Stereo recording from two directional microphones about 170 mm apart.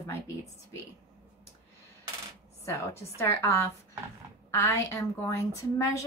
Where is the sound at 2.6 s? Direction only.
15° left (ahead or behind).